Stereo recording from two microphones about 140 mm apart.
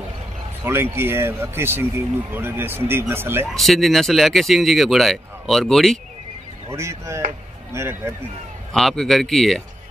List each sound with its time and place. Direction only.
0.7 s speech: 15° right (ahead or behind)
3.5 s speech: centre (ahead or behind)
6.7 s speech: 20° right (ahead or behind)
8.7 s speech: centre (ahead or behind)